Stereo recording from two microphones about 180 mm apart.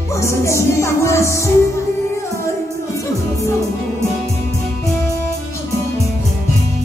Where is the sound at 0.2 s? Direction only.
15° left (ahead or behind).